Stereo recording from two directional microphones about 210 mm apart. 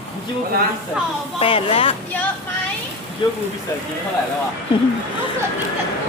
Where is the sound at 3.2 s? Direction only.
20° left (ahead or behind).